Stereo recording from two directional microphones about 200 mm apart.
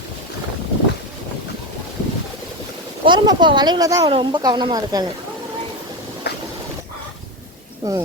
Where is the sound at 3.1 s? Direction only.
20° right (ahead or behind).